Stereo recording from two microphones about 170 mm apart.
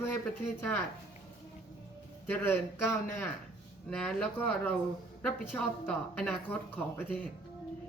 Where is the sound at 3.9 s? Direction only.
5° left (ahead or behind).